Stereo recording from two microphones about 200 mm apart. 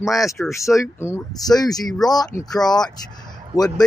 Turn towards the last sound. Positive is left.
turn(degrees=20)  # may be behind; listen again after turning